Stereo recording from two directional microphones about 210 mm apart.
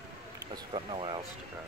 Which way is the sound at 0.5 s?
25° right (ahead or behind).